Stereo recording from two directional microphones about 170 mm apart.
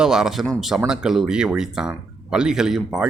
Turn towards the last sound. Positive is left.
turn(degrees=-5)  # may be behind; listen again after turning